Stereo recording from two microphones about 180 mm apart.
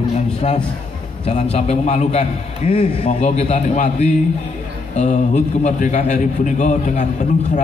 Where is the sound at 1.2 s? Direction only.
35° left (ahead or behind).